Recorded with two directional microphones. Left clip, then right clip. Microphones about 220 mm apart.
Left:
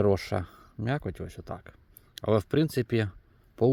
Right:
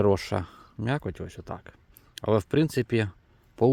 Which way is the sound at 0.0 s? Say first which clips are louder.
Right 2 dB; 5° right (ahead or behind).